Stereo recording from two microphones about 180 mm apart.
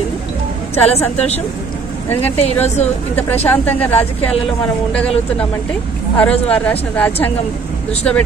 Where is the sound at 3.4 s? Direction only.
10° left (ahead or behind).